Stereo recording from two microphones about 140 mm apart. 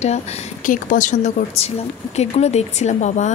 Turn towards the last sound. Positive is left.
turn(degrees=55)  # may be behind; listen again after turning